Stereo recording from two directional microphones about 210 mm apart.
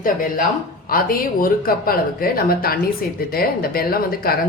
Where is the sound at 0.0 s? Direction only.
40° left (ahead or behind).